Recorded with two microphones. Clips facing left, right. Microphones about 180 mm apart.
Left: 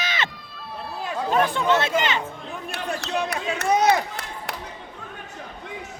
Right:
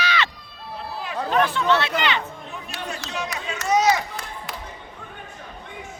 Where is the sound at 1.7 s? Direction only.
45° left (ahead or behind).